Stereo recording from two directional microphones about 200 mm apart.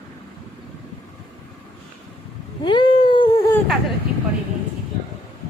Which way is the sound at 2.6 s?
25° left (ahead or behind).